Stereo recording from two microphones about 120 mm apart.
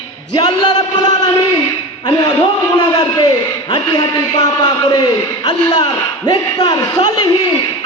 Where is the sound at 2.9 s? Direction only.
35° left (ahead or behind).